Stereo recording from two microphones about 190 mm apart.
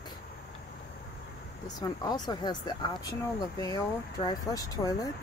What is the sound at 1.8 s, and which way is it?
Speech, 20° left (ahead or behind).